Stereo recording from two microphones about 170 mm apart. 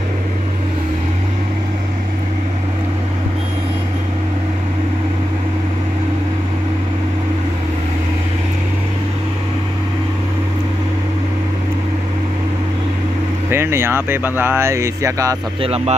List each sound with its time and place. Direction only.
13.5 s speech: 15° right (ahead or behind)
15.6 s speech: 35° right (ahead or behind)